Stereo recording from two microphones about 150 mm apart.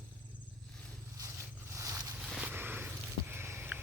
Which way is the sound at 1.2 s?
20° right (ahead or behind).